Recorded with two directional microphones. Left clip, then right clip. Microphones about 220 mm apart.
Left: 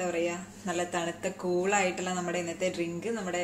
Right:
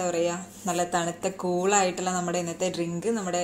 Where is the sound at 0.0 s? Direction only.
30° right (ahead or behind).